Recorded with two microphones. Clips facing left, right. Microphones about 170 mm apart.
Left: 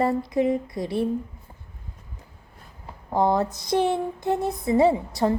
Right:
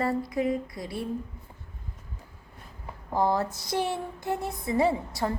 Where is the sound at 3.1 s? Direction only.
20° left (ahead or behind).